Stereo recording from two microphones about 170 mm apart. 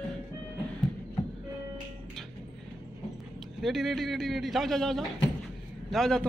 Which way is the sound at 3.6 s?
Centre (ahead or behind).